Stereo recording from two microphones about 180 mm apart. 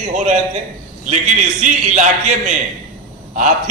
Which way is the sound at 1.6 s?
45° right (ahead or behind).